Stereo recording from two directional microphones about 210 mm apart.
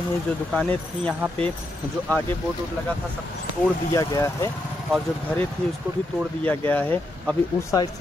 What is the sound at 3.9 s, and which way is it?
Speech, 15° left (ahead or behind).